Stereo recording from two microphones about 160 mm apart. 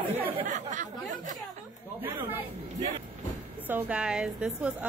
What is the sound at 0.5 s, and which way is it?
Speech, 50° right (ahead or behind).